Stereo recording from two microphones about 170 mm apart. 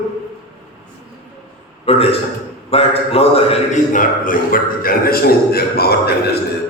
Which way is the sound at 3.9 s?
55° left (ahead or behind).